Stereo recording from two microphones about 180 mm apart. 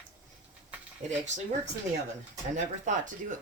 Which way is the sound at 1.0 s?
40° right (ahead or behind).